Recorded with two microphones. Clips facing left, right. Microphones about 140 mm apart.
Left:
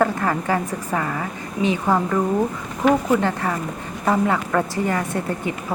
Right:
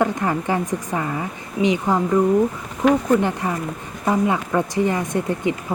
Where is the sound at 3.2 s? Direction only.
20° right (ahead or behind).